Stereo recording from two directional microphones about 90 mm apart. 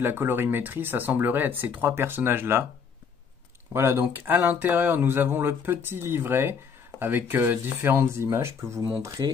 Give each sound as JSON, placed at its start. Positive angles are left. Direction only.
{"t": 0.0, "sound": "speech", "side_deg": -25}
{"t": 3.7, "sound": "speech", "side_deg": -25}